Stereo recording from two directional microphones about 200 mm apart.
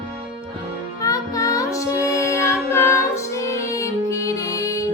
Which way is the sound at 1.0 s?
15° left (ahead or behind).